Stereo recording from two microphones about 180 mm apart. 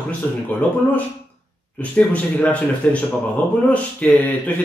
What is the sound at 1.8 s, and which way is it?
Speech, 5° left (ahead or behind).